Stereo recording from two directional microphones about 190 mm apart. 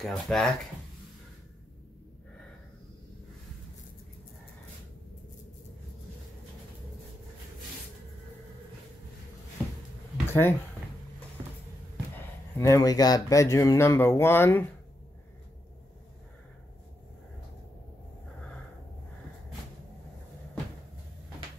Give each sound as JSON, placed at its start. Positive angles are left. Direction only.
{"t": 0.0, "sound": "speech", "side_deg": 0}
{"t": 10.2, "sound": "a sound", "side_deg": 15}
{"t": 12.5, "sound": "speech", "side_deg": 15}